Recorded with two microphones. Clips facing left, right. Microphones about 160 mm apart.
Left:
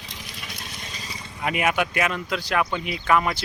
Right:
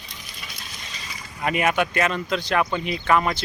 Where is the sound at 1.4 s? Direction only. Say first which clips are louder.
Right 2 dB; 5° left (ahead or behind).